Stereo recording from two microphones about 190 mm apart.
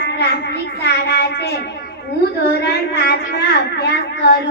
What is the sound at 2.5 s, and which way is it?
Speech, 55° left (ahead or behind).